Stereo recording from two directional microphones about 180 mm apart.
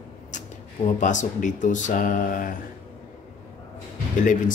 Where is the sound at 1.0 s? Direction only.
45° left (ahead or behind).